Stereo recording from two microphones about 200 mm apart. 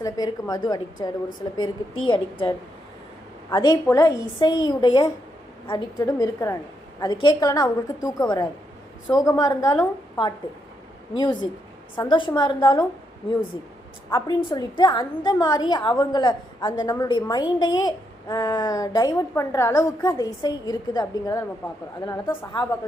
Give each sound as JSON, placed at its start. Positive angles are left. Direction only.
{"t": 0.0, "sound": "a woman's voice", "side_deg": 20}
{"t": 11.1, "sound": "a woman's voice", "side_deg": 20}
{"t": 14.1, "sound": "a woman's voice", "side_deg": 20}